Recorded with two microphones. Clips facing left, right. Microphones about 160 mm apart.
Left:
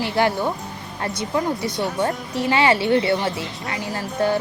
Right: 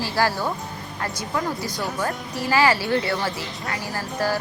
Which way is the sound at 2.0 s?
25° left (ahead or behind).